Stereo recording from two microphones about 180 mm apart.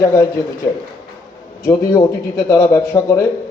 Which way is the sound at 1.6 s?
15° left (ahead or behind).